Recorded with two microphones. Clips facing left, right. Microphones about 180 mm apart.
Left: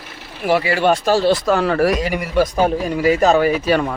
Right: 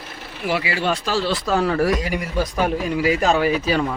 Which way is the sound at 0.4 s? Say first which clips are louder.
Left 6 dB; 50° left (ahead or behind).